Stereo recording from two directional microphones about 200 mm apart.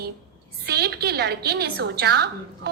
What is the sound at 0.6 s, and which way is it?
A woman's voice, 50° right (ahead or behind).